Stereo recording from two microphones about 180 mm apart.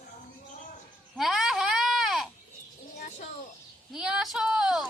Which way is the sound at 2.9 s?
45° left (ahead or behind).